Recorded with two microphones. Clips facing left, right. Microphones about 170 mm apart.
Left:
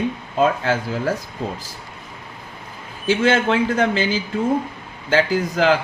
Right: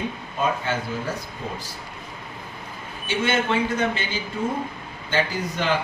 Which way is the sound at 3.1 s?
90° left.